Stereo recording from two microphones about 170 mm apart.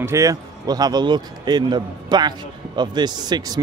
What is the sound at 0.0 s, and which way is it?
Speech, 20° right (ahead or behind).